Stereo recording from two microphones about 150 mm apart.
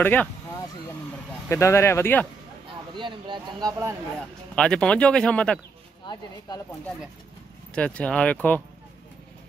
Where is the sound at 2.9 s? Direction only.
30° right (ahead or behind).